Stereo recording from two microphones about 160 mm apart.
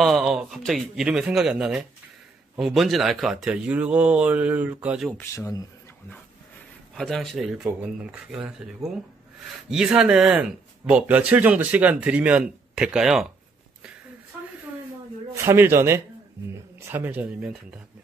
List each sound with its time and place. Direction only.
0.0 s speech: centre (ahead or behind)
5.1 s speech: 15° left (ahead or behind)
7.0 s speech: centre (ahead or behind)
15.3 s speech: 15° right (ahead or behind)